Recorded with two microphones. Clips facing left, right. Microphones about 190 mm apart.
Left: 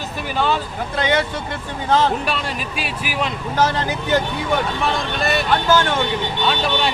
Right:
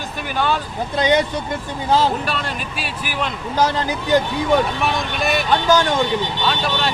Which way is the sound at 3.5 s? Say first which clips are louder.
Right 1 dB; 15° right (ahead or behind).